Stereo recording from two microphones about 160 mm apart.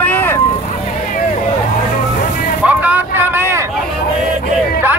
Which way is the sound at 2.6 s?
10° right (ahead or behind).